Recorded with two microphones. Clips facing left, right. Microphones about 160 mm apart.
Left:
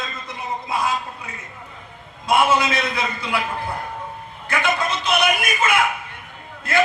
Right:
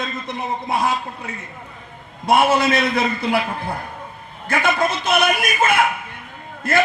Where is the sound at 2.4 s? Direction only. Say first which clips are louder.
Right 2 dB; 55° right (ahead or behind).